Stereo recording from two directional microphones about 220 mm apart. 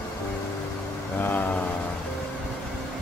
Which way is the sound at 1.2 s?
10° left (ahead or behind).